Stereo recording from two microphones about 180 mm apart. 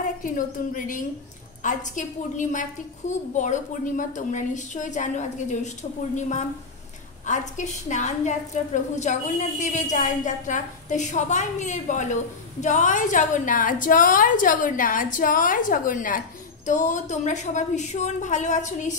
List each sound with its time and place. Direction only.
0.0 s a woman's voice: 45° left (ahead or behind)